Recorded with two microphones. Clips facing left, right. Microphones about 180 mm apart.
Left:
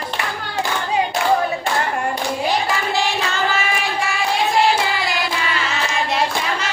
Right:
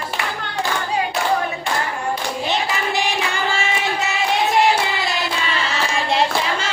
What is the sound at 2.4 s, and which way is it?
Child singing, 20° right (ahead or behind).